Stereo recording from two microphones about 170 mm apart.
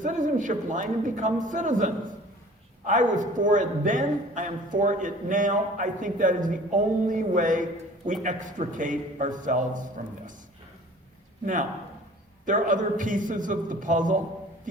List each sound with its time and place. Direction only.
0.0 s a man's voice: 50° right (ahead or behind)
12.5 s a man's voice: 50° right (ahead or behind)